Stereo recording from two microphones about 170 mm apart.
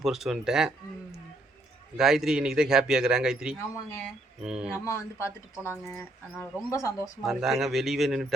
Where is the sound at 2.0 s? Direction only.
5° right (ahead or behind).